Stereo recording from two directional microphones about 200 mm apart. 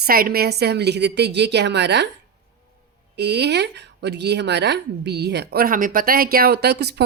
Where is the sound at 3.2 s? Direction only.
55° right (ahead or behind).